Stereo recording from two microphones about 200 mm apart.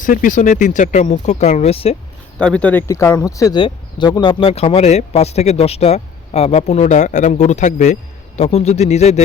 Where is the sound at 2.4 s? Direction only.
5° left (ahead or behind).